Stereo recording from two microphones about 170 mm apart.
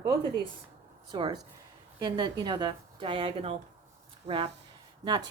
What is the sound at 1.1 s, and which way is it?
Speech, 30° right (ahead or behind).